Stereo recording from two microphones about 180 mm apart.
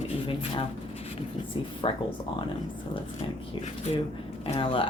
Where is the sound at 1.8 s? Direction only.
25° left (ahead or behind).